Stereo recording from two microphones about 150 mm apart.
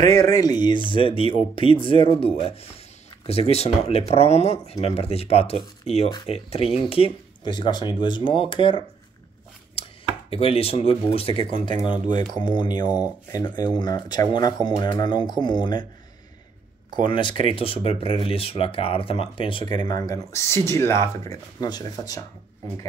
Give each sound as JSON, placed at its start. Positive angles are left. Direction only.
{"t": 0.0, "sound": "speech", "side_deg": 25}
{"t": 9.8, "sound": "chopping", "side_deg": 35}
{"t": 10.3, "sound": "speech", "side_deg": 40}
{"t": 11.9, "sound": "speech", "side_deg": -60}
{"t": 12.4, "sound": "speech", "side_deg": 30}
{"t": 16.9, "sound": "speech", "side_deg": 30}